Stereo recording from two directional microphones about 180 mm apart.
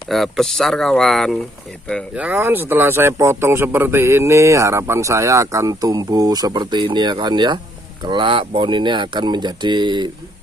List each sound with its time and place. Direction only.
0.1 s speech: centre (ahead or behind)
2.1 s a man's voice: 10° right (ahead or behind); by 10.1 s 25° right (ahead or behind)